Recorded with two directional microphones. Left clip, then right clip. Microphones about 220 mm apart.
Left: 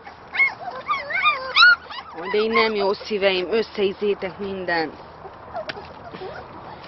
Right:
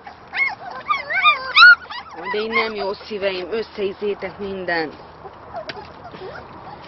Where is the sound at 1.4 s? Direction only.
35° right (ahead or behind).